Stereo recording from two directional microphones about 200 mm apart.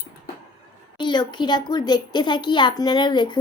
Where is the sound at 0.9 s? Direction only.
20° left (ahead or behind).